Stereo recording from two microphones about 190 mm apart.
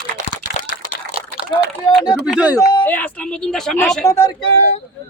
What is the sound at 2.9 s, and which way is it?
Speech, 10° left (ahead or behind).